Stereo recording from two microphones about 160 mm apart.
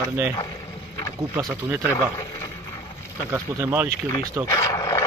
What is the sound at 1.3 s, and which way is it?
Speech, 15° right (ahead or behind).